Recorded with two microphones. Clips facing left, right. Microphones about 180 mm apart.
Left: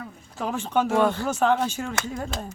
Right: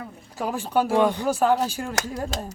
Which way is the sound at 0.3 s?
10° right (ahead or behind).